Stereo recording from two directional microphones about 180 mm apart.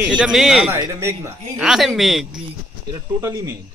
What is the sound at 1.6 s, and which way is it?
Speech, centre (ahead or behind).